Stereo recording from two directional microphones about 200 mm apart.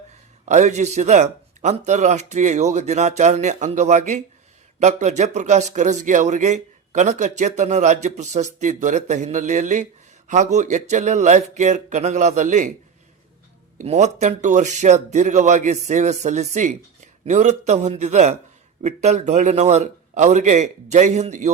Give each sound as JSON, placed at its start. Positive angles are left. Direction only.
{"t": 0.4, "sound": "a man's voice", "side_deg": -35}
{"t": 13.7, "sound": "a man's voice", "side_deg": -35}